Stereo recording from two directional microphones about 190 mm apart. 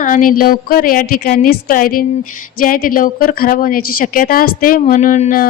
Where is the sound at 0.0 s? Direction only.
45° left (ahead or behind).